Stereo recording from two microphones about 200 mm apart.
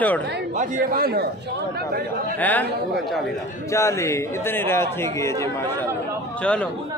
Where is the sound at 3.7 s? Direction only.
15° left (ahead or behind).